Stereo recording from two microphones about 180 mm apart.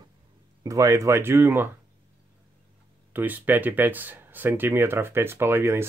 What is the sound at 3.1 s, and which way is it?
Speech, 10° right (ahead or behind).